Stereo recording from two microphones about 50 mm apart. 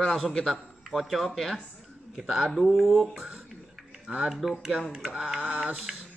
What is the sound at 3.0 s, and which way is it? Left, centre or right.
Speech, centre.